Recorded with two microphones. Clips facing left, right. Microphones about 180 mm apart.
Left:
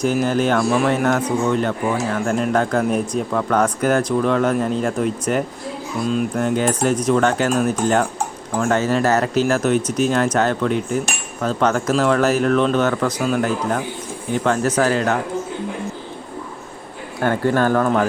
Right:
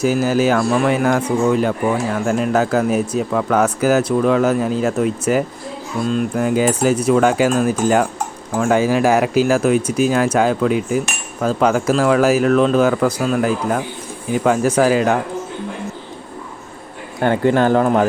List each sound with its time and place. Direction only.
0.0 s speech: 5° right (ahead or behind)
17.2 s speech: 15° right (ahead or behind)